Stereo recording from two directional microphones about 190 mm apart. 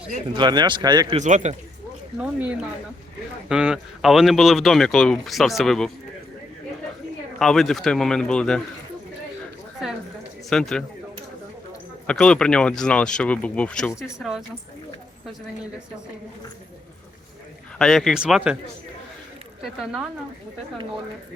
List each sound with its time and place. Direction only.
0.3 s speech: 25° right (ahead or behind)
1.1 s speech: 40° right (ahead or behind)
2.1 s speech: 5° right (ahead or behind)
7.3 s speech: centre (ahead or behind)
10.5 s speech: 5° left (ahead or behind)
12.0 s speech: 5° left (ahead or behind)
17.7 s speech: centre (ahead or behind)
19.6 s speech: 5° right (ahead or behind)